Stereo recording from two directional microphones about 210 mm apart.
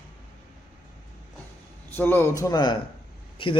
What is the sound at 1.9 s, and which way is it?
Speech, 10° left (ahead or behind).